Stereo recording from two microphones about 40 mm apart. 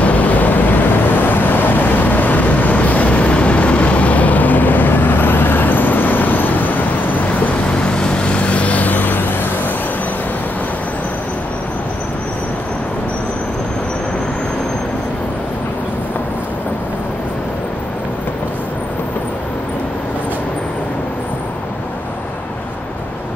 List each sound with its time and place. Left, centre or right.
0.0 s vehicle: left
7.8 s vehicle: left